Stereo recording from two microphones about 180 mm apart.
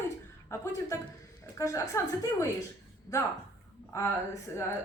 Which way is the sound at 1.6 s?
15° left (ahead or behind).